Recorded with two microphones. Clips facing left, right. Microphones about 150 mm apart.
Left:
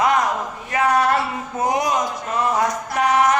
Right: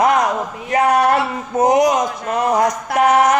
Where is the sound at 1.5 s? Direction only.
45° right (ahead or behind).